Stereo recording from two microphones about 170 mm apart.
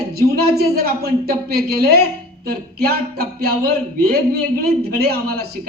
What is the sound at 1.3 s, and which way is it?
Speech, 65° right (ahead or behind).